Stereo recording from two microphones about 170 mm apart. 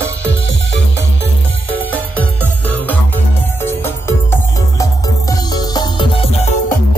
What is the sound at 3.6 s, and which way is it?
Music, 15° left (ahead or behind).